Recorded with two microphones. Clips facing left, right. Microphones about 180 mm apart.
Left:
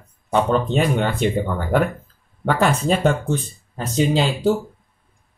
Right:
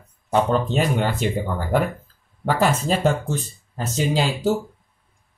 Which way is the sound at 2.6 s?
Centre (ahead or behind).